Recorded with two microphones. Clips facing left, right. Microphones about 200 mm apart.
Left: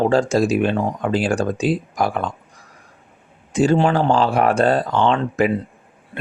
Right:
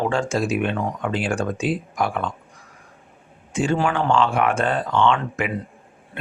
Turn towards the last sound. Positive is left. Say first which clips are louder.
# left 3 dB
turn(degrees=35)  # may be behind; listen again after turning